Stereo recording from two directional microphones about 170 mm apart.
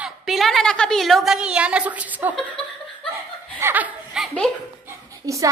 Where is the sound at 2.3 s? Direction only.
5° left (ahead or behind).